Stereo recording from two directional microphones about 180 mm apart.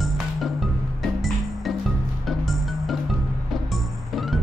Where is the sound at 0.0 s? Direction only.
Centre (ahead or behind).